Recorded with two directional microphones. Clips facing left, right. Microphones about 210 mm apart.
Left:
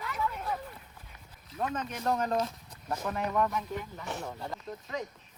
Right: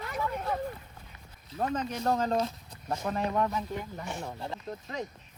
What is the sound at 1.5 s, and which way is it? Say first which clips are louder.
Speech: right 3 dB; 30° right (ahead or behind).